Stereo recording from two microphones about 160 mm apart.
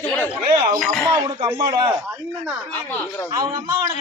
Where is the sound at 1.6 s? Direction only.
25° right (ahead or behind).